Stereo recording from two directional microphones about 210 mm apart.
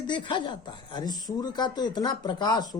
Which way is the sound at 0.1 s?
20° left (ahead or behind).